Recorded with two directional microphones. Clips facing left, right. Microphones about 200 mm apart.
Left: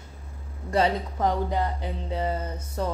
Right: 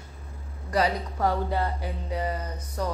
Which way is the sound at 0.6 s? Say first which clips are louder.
Left 2 dB; 25° left (ahead or behind).